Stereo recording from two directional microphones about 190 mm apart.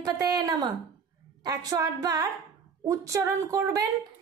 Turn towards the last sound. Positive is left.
turn(degrees=-20)  # may be behind; listen again after turning